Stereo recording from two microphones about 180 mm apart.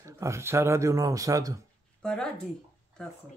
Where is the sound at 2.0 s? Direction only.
5° left (ahead or behind).